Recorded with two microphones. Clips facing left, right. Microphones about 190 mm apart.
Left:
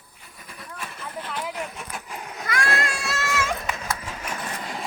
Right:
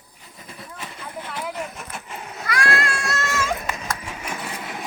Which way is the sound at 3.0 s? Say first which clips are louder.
Right 1 dB; 5° left (ahead or behind).